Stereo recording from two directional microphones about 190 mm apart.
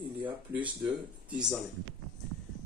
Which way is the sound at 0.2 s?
5° right (ahead or behind).